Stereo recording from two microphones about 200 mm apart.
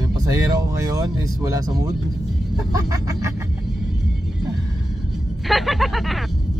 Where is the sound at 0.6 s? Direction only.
15° right (ahead or behind).